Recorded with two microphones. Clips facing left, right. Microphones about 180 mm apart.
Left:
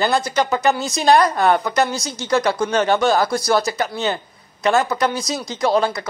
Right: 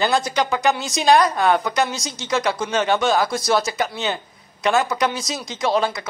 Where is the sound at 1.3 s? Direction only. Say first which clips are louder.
Left 2 dB; 15° left (ahead or behind).